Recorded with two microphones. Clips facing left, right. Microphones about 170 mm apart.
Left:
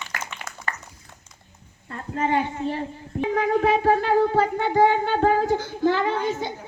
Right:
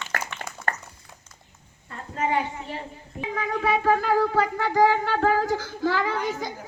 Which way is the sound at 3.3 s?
55° left (ahead or behind).